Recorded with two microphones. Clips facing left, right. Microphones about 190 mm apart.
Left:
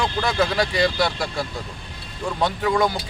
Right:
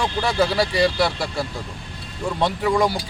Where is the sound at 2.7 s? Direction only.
10° right (ahead or behind).